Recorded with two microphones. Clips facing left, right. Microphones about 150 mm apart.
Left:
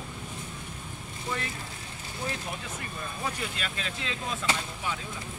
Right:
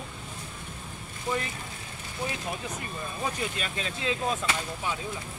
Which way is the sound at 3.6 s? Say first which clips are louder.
Right 2 dB; 20° right (ahead or behind).